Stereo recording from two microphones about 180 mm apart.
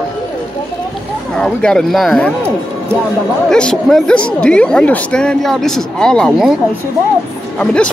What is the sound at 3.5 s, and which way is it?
Speech, 5° left (ahead or behind).